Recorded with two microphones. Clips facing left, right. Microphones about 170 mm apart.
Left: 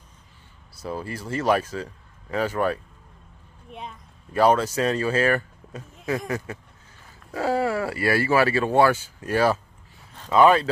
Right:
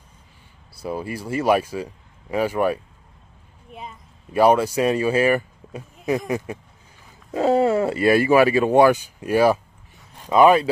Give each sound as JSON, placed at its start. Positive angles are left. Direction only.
{"t": 0.7, "sound": "speech", "side_deg": -10}
{"t": 4.3, "sound": "speech", "side_deg": -15}